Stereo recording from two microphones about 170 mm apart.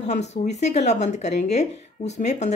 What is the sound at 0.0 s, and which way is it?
Speech, 40° left (ahead or behind).